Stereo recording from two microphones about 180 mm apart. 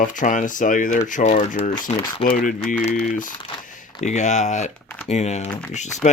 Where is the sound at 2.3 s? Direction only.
50° left (ahead or behind).